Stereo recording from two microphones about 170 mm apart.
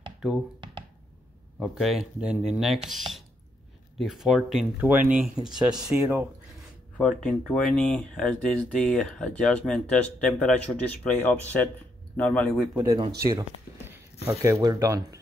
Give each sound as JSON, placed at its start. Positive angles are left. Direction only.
{"t": 1.6, "sound": "speech", "side_deg": 0}
{"t": 7.0, "sound": "speech", "side_deg": 5}
{"t": 12.7, "sound": "speech", "side_deg": -20}
{"t": 13.1, "sound": "a sound", "side_deg": -20}
{"t": 14.4, "sound": "speech", "side_deg": -20}